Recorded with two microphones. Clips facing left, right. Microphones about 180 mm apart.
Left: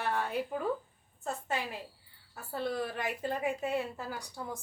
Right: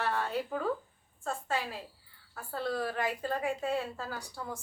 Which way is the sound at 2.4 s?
20° left (ahead or behind).